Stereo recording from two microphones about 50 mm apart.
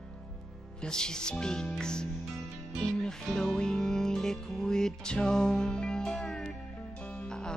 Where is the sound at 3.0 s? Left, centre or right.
Centre.